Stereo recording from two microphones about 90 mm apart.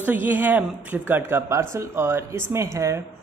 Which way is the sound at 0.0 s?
20° right (ahead or behind).